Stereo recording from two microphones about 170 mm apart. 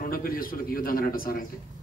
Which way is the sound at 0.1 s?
55° left (ahead or behind).